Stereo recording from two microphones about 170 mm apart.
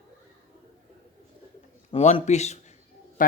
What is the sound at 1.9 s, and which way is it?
Speech, 40° left (ahead or behind).